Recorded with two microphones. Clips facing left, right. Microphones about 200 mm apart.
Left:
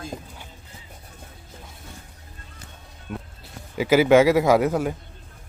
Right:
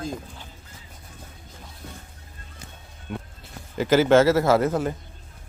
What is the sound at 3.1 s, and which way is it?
Music, centre (ahead or behind).